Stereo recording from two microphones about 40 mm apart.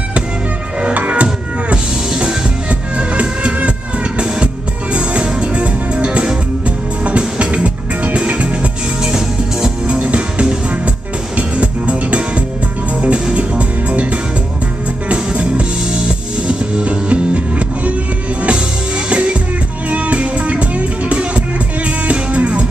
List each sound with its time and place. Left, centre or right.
0.9 s music: right
4.9 s music: right
9.0 s music: centre
9.9 s music: right
19.0 s music: right
22.0 s music: right